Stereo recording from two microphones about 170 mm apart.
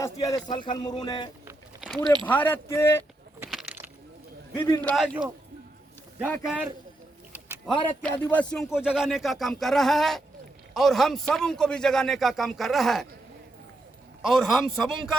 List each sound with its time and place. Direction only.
0.0 s speech: 20° left (ahead or behind)
2.2 s speech: 10° left (ahead or behind)
3.5 s a sound: centre (ahead or behind)
4.5 s speech: 15° left (ahead or behind)
4.9 s a man's voice: 5° right (ahead or behind)
6.4 s a man's voice: 5° right (ahead or behind)
8.0 s a man's voice: 10° left (ahead or behind)
14.2 s a man's voice: centre (ahead or behind)